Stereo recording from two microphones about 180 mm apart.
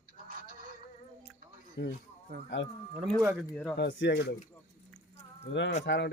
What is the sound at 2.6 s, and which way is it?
Speech, 90° left.